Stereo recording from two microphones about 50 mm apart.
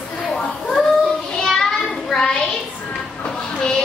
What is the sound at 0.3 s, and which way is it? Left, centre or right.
Children playing, centre.